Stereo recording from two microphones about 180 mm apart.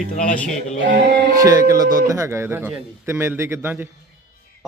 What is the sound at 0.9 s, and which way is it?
Music, 75° right (ahead or behind).